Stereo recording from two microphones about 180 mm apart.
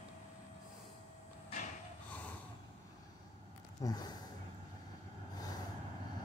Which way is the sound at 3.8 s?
20° left (ahead or behind).